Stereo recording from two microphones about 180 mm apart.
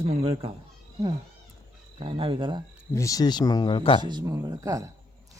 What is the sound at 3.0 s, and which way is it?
Speech, 20° left (ahead or behind).